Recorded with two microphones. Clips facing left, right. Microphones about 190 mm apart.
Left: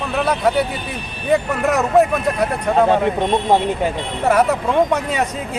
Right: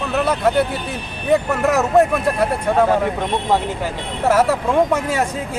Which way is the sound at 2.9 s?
25° left (ahead or behind).